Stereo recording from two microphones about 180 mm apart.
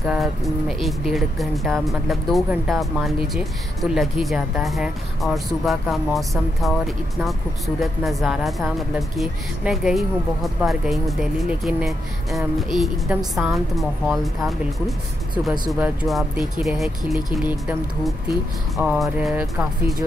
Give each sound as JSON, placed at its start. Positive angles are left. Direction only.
{"t": 0.0, "sound": "speech", "side_deg": 0}